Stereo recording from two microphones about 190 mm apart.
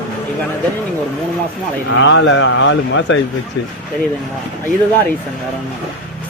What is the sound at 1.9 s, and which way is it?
Speech, 85° left.